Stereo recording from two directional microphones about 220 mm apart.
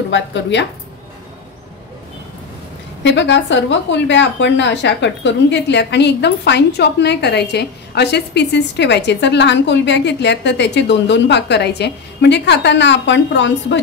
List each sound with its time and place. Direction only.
0.1 s a woman's voice: 55° left (ahead or behind)
3.0 s a woman's voice: 55° left (ahead or behind)